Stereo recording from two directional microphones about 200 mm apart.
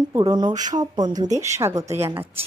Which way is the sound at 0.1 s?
20° right (ahead or behind).